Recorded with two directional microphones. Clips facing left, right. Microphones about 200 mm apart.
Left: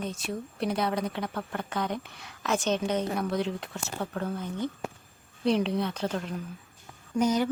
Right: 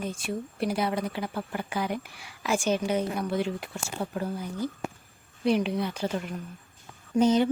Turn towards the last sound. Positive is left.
turn(degrees=-25)  # may be behind; listen again after turning